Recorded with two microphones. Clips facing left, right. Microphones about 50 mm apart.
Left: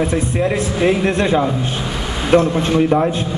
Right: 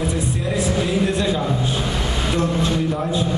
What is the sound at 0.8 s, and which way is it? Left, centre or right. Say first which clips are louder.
Speech: left 8 dB; left.